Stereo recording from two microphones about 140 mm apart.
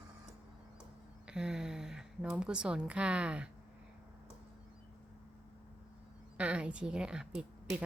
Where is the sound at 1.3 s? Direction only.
5° right (ahead or behind).